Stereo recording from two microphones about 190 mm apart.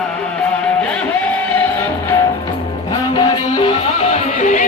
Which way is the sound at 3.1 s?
25° left (ahead or behind).